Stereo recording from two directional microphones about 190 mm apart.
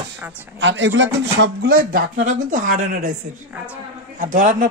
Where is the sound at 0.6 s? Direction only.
75° right (ahead or behind).